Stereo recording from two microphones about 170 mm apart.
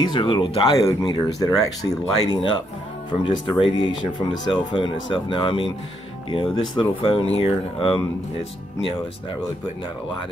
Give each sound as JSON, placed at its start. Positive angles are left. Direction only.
{"t": 0.0, "sound": "speech", "side_deg": 25}